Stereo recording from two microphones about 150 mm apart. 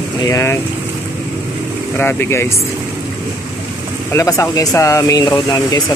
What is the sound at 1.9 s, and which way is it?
Speech, 15° left (ahead or behind).